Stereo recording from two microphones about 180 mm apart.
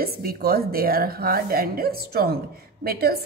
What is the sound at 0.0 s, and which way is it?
A woman's voice, 55° right (ahead or behind).